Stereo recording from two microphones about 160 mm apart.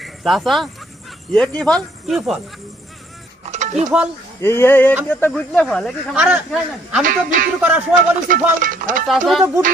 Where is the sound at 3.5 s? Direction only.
45° right (ahead or behind).